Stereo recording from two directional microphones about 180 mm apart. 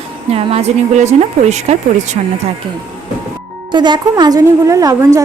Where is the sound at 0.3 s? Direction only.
35° right (ahead or behind).